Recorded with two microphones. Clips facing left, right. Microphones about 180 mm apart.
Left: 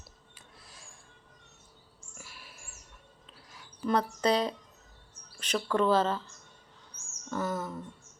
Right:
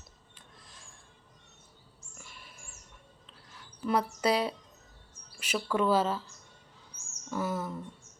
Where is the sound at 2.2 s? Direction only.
5° left (ahead or behind).